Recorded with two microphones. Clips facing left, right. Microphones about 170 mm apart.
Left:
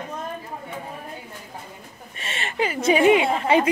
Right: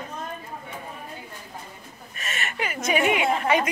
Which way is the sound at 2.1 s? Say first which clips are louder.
Left 5 dB; 30° left (ahead or behind).